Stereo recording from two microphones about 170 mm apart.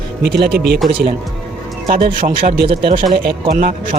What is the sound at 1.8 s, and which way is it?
Speech, 50° right (ahead or behind).